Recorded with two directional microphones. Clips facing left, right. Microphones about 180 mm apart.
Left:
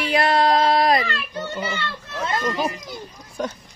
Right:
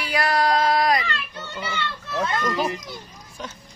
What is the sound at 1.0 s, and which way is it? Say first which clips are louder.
Speech: left 4 dB; 40° left (ahead or behind).